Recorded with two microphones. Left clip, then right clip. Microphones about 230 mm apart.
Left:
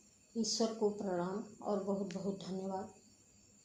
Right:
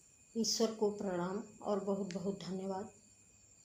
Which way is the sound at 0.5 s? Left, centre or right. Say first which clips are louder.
Even; right.